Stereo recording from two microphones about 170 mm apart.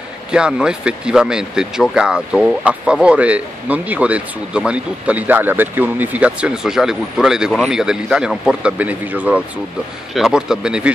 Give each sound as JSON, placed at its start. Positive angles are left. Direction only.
{"t": 0.3, "sound": "speech", "side_deg": -5}